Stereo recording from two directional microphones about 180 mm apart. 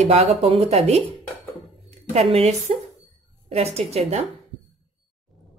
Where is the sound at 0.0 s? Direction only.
35° right (ahead or behind).